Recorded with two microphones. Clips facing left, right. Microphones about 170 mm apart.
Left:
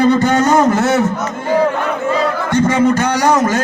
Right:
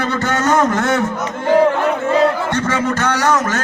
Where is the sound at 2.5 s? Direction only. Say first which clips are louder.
Left 6 dB; 15° left (ahead or behind).